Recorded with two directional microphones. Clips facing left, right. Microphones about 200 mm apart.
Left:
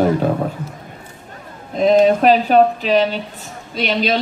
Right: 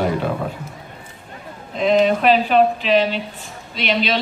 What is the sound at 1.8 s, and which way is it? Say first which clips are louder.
A woman's voice: left 4 dB; 40° left (ahead or behind).